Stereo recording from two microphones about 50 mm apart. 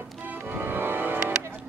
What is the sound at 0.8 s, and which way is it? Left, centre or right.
Music, right.